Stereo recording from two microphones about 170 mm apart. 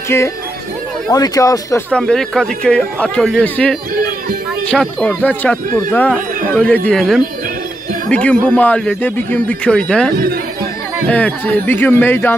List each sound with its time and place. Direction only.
0.1 s speech: 15° left (ahead or behind)
1.9 s speech: 5° left (ahead or behind)
5.7 s speech: 20° left (ahead or behind)
6.5 s speech: 5° left (ahead or behind)
10.1 s speech: 60° right (ahead or behind)
11.1 s speech: 10° left (ahead or behind)